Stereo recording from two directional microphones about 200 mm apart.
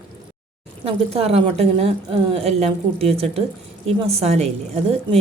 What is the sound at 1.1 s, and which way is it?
A woman's voice, 30° right (ahead or behind).